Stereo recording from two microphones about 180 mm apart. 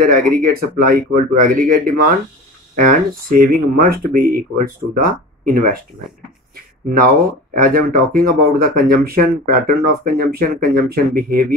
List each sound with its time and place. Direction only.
0.0 s speech: 50° right (ahead or behind)
6.5 s a sound: 55° right (ahead or behind)
7.5 s speech: 50° right (ahead or behind)